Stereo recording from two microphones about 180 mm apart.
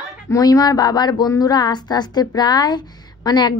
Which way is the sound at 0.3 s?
20° left (ahead or behind).